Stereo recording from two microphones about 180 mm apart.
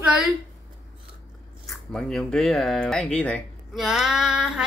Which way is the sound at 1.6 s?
5° left (ahead or behind).